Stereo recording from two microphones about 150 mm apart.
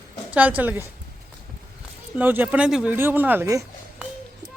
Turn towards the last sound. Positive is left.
turn(degrees=-10)  # may be behind; listen again after turning